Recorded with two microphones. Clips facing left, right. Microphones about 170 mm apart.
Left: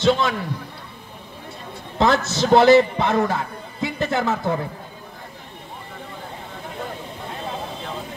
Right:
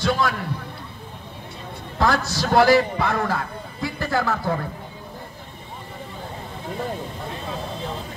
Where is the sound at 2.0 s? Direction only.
20° left (ahead or behind).